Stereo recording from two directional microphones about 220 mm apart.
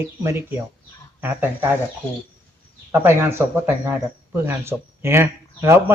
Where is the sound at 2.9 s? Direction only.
10° right (ahead or behind).